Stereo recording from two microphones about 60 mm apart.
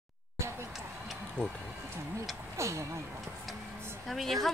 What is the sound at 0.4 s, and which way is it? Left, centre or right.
Basketball bounce, right.